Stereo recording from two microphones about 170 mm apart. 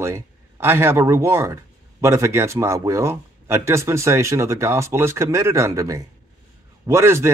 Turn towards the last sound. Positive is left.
turn(degrees=-15)  # may be behind; listen again after turning